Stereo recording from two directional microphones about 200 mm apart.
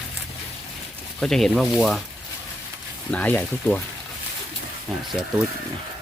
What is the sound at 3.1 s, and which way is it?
Speech, 5° left (ahead or behind).